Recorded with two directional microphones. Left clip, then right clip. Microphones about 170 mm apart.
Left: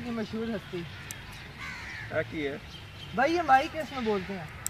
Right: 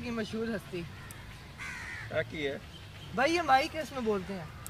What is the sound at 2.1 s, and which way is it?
Speech, 35° right (ahead or behind).